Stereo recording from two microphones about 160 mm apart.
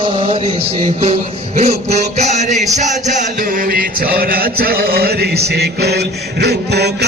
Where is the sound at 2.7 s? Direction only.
50° right (ahead or behind); by 5.4 s 80° right.